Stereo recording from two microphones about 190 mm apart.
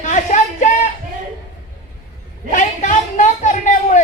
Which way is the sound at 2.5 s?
40° left (ahead or behind).